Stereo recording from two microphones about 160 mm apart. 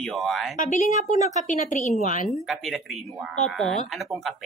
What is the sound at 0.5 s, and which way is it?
A woman's voice, 55° left (ahead or behind).